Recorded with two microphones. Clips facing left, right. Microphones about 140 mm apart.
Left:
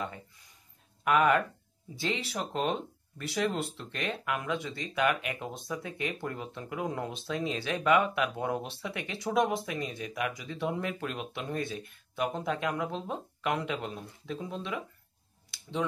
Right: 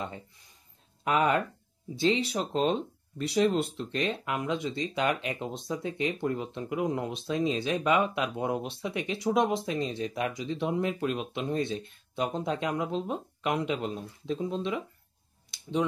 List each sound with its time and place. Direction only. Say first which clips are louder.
1.0 s speech: left 1 dB; 25° right (ahead or behind)